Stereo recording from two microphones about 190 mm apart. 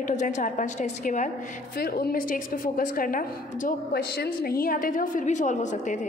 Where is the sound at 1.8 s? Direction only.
50° left (ahead or behind).